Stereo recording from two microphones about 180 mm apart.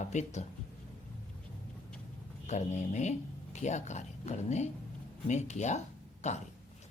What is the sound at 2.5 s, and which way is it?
Speech, 40° left (ahead or behind).